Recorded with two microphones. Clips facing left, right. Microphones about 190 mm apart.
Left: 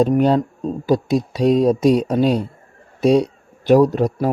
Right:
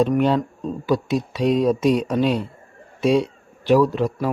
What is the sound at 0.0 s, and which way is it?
Speech, 40° left (ahead or behind).